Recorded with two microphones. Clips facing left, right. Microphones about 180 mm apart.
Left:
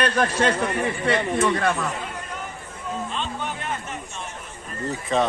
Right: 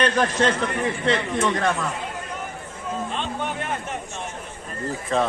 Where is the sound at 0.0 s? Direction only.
10° left (ahead or behind).